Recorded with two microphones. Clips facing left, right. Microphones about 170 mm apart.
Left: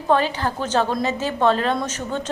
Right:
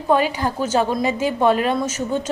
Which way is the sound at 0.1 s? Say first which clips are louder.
Right 1 dB; 10° right (ahead or behind).